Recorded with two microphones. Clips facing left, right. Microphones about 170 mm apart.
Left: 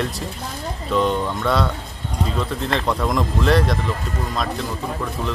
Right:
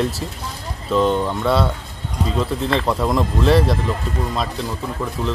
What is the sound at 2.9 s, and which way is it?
Speech, 5° right (ahead or behind).